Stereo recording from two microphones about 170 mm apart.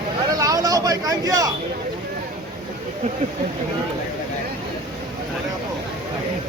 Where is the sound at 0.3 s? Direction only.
20° right (ahead or behind).